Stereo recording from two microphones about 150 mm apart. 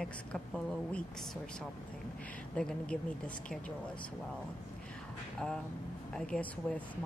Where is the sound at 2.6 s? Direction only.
5° left (ahead or behind).